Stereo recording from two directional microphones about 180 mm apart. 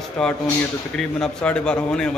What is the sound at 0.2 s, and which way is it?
A man's voice, 5° left (ahead or behind).